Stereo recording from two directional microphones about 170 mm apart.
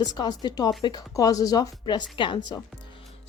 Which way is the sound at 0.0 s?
25° left (ahead or behind).